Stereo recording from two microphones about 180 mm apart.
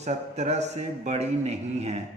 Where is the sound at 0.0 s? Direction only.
40° right (ahead or behind).